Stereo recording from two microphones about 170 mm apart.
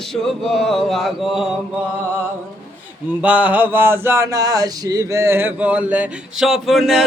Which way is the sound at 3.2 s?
10° right (ahead or behind).